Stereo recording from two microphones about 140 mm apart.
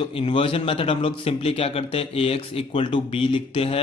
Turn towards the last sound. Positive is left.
turn(degrees=45)  # may be behind; listen again after turning